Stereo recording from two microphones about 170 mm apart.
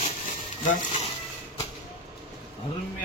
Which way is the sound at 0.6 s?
50° left (ahead or behind).